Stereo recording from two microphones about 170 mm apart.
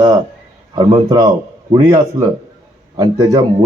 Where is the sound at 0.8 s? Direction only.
25° right (ahead or behind).